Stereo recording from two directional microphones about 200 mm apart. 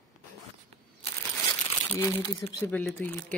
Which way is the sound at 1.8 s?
10° left (ahead or behind).